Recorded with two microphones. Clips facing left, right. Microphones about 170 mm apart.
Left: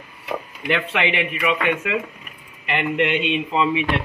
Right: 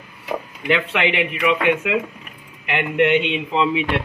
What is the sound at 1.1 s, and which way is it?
Speech, 15° right (ahead or behind).